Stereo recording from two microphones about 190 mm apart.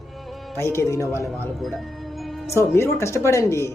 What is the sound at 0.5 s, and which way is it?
Speech, 15° left (ahead or behind).